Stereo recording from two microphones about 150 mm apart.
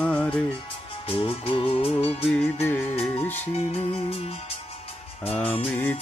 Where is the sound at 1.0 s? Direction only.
40° left (ahead or behind).